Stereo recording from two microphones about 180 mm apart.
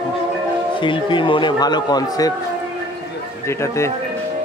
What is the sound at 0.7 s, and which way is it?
Speech, 25° left (ahead or behind).